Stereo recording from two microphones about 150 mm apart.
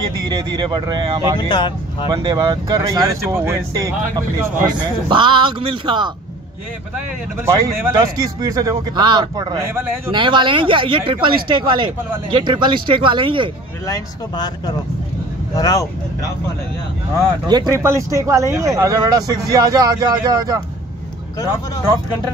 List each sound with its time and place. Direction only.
0.3 s speech: 30° right (ahead or behind)
1.5 s speech: 30° left (ahead or behind)
2.0 s speech: 25° right (ahead or behind)
7.6 s speech: 20° right (ahead or behind)
13.8 s speech: 25° left (ahead or behind)
17.5 s speech: 25° right (ahead or behind)